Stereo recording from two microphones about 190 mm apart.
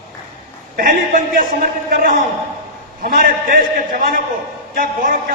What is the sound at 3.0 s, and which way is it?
A man's voice, 50° right (ahead or behind).